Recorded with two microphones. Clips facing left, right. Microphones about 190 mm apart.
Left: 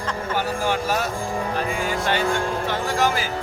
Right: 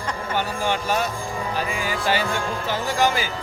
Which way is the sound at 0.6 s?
5° left (ahead or behind).